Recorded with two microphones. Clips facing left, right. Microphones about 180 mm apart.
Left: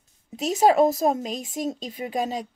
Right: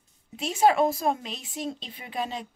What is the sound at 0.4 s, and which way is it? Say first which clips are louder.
A woman's voice: left 3 dB; 40° left (ahead or behind).